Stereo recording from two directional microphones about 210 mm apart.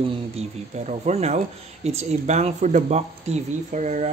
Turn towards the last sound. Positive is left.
turn(degrees=-35)  # may be behind; listen again after turning